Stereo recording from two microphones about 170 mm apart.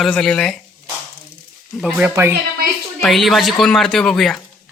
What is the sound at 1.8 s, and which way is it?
Speech, 10° right (ahead or behind).